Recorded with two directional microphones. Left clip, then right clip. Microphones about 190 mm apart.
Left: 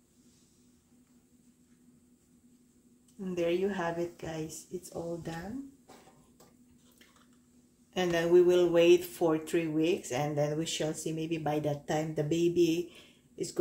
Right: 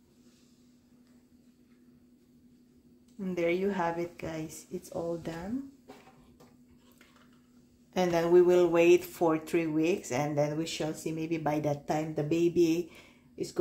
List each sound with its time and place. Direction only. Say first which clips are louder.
3.3 s speech: right 1 dB; 25° right (ahead or behind)
7.9 s speech: right 1 dB; 25° right (ahead or behind)